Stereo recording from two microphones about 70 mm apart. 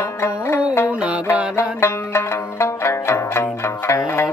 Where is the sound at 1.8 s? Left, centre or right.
Left.